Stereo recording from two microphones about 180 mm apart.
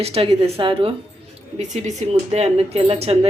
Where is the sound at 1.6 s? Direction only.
40° right (ahead or behind).